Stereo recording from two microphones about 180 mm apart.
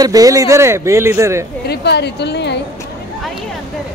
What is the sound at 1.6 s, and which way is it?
Speech, 65° left (ahead or behind).